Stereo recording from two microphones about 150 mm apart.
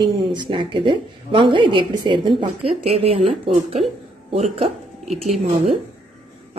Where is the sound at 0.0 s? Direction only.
30° right (ahead or behind).